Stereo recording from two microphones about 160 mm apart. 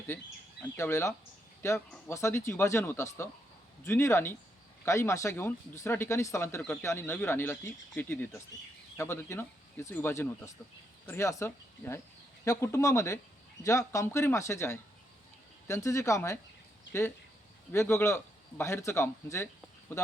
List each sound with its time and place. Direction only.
0.6 s a man's voice: 15° left (ahead or behind)
17.7 s a man's voice: 15° left (ahead or behind)